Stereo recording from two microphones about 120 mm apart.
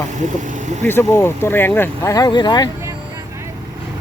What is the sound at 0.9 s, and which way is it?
Speech, 20° left (ahead or behind).